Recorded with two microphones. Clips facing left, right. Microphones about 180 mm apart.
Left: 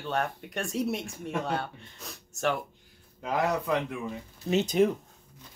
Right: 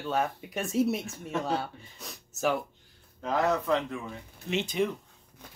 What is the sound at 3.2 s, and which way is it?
Speech, 10° left (ahead or behind).